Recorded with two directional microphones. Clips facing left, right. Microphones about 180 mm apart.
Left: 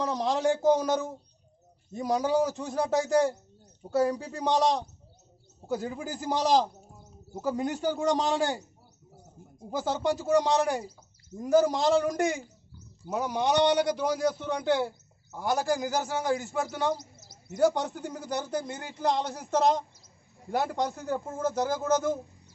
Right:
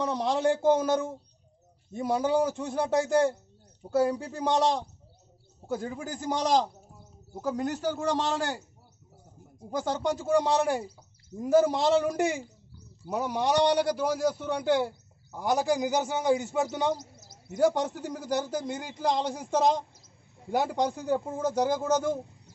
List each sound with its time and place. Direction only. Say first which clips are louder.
0.0 s a man's voice: right 1 dB; 5° right (ahead or behind); by 8.6 s 15° left (ahead or behind)
9.7 s a man's voice: left 1 dB; 5° left (ahead or behind)
15.3 s a man's voice: right 1 dB; 15° right (ahead or behind)
17.6 s a man's voice: even; centre (ahead or behind)